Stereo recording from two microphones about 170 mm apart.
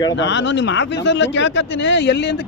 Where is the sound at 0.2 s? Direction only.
90° left.